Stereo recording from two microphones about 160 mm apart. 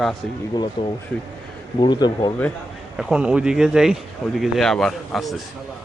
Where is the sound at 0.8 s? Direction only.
35° left (ahead or behind).